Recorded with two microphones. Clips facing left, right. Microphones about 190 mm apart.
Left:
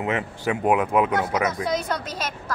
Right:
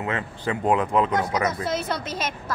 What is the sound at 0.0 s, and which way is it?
Speech, 15° left (ahead or behind).